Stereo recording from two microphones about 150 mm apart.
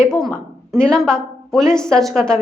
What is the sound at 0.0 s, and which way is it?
A woman's voice, 5° left (ahead or behind).